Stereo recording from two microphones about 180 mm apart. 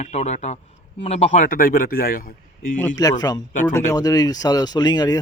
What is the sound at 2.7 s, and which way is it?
Speech, 15° left (ahead or behind).